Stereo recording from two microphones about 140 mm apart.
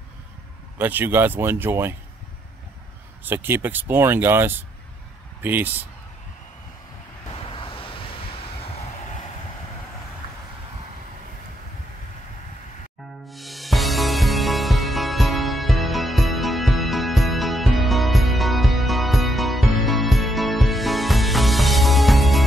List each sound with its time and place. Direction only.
0.7 s speech: 15° right (ahead or behind)
3.3 s speech: 15° right (ahead or behind)
7.4 s vehicle: 40° left (ahead or behind)
13.3 s music: centre (ahead or behind)